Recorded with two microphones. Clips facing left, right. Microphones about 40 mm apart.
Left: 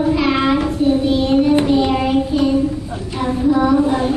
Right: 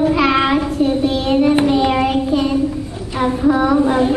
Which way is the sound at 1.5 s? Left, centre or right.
Centre.